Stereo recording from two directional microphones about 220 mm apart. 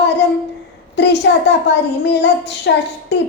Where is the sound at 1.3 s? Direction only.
55° left (ahead or behind).